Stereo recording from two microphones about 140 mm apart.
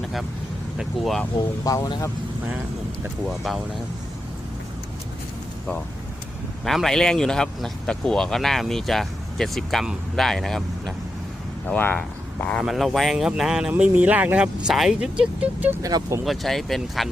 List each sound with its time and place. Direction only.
0.0 s vehicle: centre (ahead or behind)
0.8 s speech: centre (ahead or behind)
1.6 s speech: 25° left (ahead or behind)
3.2 s speech: centre (ahead or behind)
6.7 s speech: centre (ahead or behind)
12.6 s speech: centre (ahead or behind)
15.8 s speech: 25° right (ahead or behind)
16.2 s speech: centre (ahead or behind)